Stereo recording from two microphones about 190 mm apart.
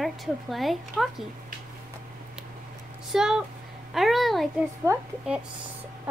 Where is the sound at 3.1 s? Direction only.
5° right (ahead or behind).